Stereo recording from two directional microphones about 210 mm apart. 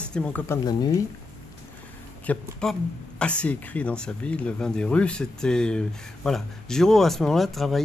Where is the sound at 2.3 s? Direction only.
5° left (ahead or behind).